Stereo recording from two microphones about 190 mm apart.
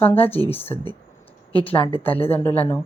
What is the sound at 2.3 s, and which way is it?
Speech, 10° left (ahead or behind).